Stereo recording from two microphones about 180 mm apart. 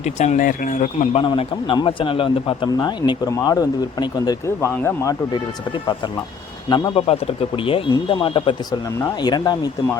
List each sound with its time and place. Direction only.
0.0 s speech: 40° left (ahead or behind)
1.3 s speech: 25° left (ahead or behind); by 5.1 s 10° left (ahead or behind)
6.7 s speech: 25° left (ahead or behind)